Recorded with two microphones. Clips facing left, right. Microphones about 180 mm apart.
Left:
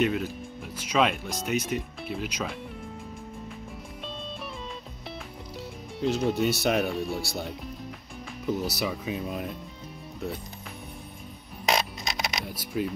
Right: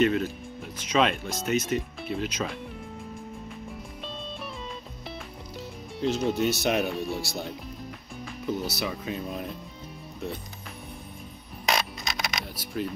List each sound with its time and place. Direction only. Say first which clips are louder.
0.0 s speech: right 3 dB; 5° left (ahead or behind)
5.9 s speech: even; centre (ahead or behind)
11.6 s music: left 1 dB; 25° left (ahead or behind)
12.4 s speech: left 2 dB; 10° left (ahead or behind)